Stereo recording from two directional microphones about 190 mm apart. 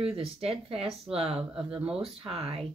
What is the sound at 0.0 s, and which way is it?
Speech, 30° right (ahead or behind).